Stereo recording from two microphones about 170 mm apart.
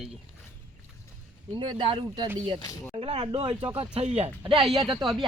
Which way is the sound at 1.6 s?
30° right (ahead or behind).